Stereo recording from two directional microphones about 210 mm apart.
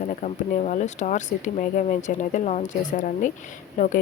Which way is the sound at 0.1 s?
35° left (ahead or behind).